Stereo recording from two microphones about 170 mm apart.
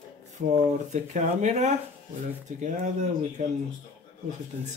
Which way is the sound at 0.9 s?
45° right (ahead or behind).